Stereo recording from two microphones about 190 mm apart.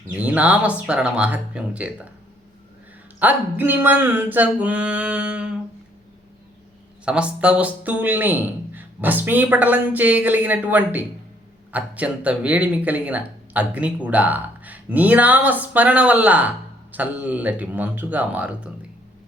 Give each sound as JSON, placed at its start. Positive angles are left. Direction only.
{"t": 0.2, "sound": "speech", "side_deg": -5}
{"t": 3.2, "sound": "speech", "side_deg": -10}
{"t": 7.0, "sound": "speech", "side_deg": -5}